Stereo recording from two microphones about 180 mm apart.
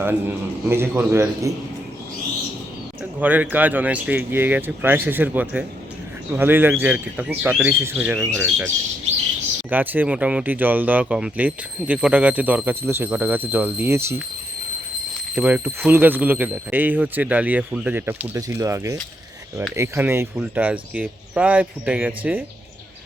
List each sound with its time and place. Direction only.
0.0 s speech: 10° right (ahead or behind)
3.0 s speech: 10° right (ahead or behind)
15.4 s speech: 10° right (ahead or behind)